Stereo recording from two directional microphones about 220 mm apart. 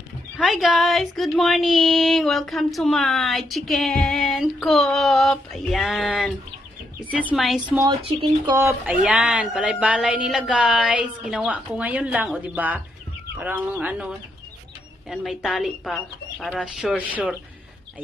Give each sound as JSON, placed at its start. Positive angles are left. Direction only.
{"t": 0.4, "sound": "speech", "side_deg": 0}
{"t": 8.0, "sound": "speech", "side_deg": -20}
{"t": 15.0, "sound": "speech", "side_deg": 0}